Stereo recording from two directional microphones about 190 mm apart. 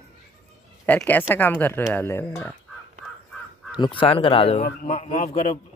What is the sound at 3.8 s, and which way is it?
A man's voice, 25° left (ahead or behind).